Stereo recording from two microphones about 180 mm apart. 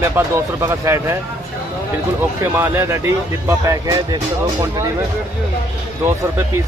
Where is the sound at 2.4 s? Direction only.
15° right (ahead or behind).